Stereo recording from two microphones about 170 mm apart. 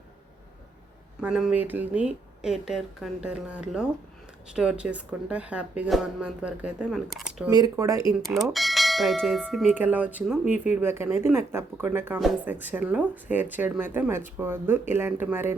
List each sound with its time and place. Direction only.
1.2 s speech: 5° right (ahead or behind)
7.5 s speech: 20° right (ahead or behind)
8.4 s speech: centre (ahead or behind)
12.2 s speech: centre (ahead or behind)